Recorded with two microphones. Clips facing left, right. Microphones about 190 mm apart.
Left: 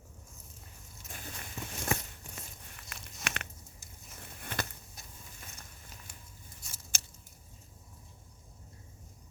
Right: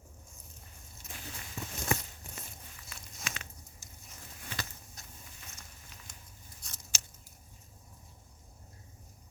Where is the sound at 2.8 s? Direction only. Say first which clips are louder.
Left 3 dB; 65° left (ahead or behind).